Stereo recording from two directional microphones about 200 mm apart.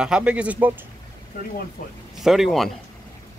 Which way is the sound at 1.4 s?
40° left (ahead or behind).